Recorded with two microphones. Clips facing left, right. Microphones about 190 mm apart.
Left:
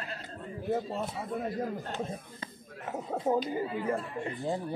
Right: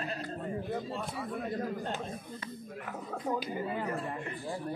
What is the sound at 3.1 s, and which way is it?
Speech, 25° left (ahead or behind).